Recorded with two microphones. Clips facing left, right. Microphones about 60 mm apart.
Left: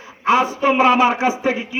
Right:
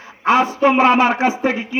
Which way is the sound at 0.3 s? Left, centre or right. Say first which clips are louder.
Right 2 dB; right.